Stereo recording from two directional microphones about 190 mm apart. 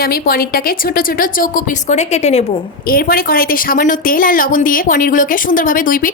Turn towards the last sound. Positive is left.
turn(degrees=45)  # may be behind; listen again after turning